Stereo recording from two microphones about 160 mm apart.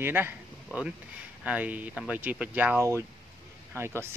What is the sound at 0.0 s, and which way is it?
Speech, 15° right (ahead or behind).